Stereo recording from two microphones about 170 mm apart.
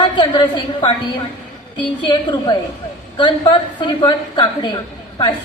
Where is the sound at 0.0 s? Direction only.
30° left (ahead or behind).